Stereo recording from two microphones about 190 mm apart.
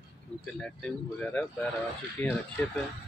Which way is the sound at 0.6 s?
5° left (ahead or behind).